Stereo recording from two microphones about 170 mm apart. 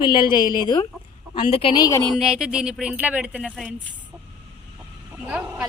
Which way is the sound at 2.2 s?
5° right (ahead or behind).